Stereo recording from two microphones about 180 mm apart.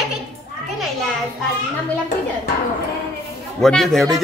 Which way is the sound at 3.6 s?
Centre (ahead or behind).